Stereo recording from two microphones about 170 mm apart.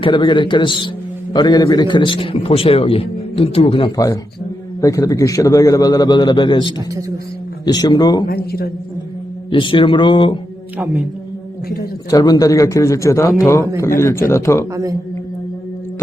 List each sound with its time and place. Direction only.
0.0 s a man's voice: 25° left (ahead or behind)
8.3 s a man's voice: 65° left (ahead or behind)
9.5 s a man's voice: 30° left (ahead or behind)
12.1 s a man's voice: 20° left (ahead or behind)
14.7 s speech: 20° right (ahead or behind)